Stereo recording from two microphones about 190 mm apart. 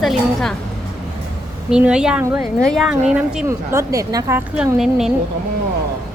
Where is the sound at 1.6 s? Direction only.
5° right (ahead or behind).